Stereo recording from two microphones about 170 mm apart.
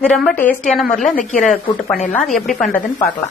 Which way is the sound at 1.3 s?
Centre (ahead or behind).